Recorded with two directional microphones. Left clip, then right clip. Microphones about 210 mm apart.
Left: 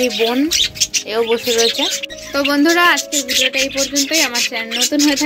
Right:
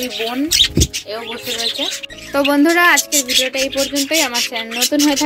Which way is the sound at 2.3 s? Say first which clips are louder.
Right 1 dB; 15° right (ahead or behind).